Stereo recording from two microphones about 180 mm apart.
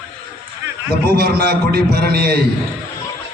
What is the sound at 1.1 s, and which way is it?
A man's voice, 60° right (ahead or behind).